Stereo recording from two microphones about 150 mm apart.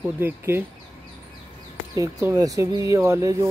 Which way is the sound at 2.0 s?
20° right (ahead or behind).